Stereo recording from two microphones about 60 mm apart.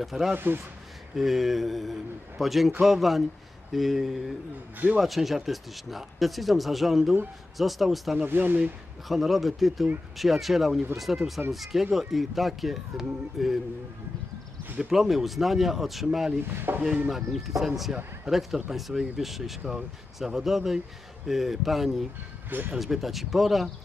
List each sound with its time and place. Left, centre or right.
0.0 s speech: centre
8.3 s chopping: right
9.0 s speech: centre
14.8 s speech: centre
16.4 s chopping: right
17.1 s speech: centre